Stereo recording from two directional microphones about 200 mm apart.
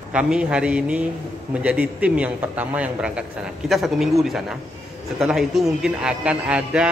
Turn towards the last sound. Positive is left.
turn(degrees=-5)  # may be behind; listen again after turning